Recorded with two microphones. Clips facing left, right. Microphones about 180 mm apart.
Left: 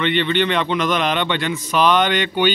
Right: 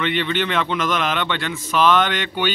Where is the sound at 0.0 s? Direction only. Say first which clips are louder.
Left 3 dB; 5° right (ahead or behind).